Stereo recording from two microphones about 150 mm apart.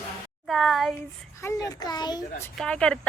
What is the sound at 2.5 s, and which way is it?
Speech, 5° left (ahead or behind).